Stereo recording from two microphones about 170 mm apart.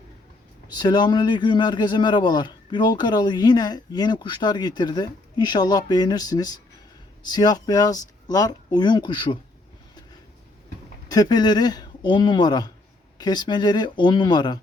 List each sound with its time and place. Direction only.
0.7 s a man's voice: 25° left (ahead or behind)
11.1 s a man's voice: 25° left (ahead or behind)